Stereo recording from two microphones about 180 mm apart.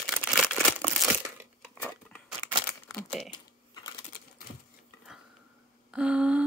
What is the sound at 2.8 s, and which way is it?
Crumpling, centre (ahead or behind).